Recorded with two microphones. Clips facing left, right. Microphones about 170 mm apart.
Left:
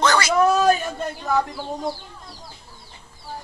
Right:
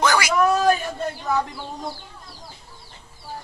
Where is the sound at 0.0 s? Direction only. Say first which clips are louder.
Left 1 dB; 10° right (ahead or behind).